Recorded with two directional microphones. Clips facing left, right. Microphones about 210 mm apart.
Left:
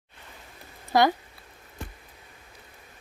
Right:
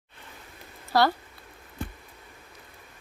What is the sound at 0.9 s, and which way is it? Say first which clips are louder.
Speech: left 2 dB; 15° left (ahead or behind).